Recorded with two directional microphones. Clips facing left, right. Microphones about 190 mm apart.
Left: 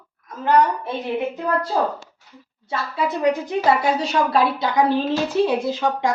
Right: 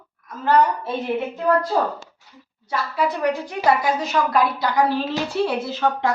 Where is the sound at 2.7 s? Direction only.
25° left (ahead or behind).